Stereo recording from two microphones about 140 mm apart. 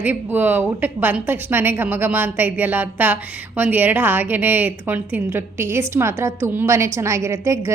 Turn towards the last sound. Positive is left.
turn(degrees=-20)  # may be behind; listen again after turning